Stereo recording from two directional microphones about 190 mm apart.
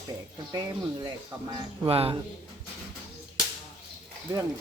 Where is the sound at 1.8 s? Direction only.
30° right (ahead or behind).